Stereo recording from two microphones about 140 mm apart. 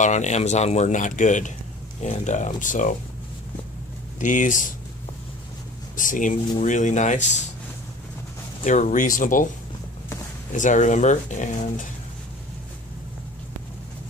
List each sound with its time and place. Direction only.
0.0 s speech: 55° left (ahead or behind)
4.2 s speech: 65° left (ahead or behind)
5.9 s speech: 65° left (ahead or behind)
8.6 s speech: 65° left (ahead or behind)
10.5 s speech: 65° left (ahead or behind)